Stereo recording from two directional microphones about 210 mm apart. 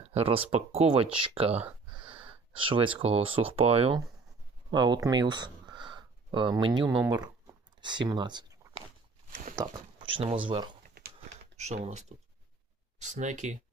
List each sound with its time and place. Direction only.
0.0 s speech: 30° right (ahead or behind)